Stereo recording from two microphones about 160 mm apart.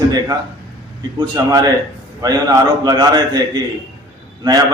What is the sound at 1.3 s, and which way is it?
A man's voice, 20° right (ahead or behind).